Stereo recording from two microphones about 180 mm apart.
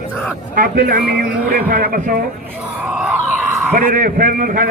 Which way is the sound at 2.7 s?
5° right (ahead or behind).